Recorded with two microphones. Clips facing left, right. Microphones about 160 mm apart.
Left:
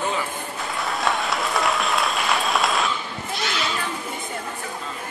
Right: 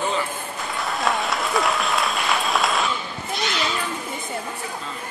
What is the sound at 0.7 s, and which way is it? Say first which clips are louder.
Applause: right 1 dB; centre (ahead or behind).